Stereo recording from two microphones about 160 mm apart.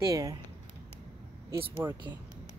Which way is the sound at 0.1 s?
20° right (ahead or behind).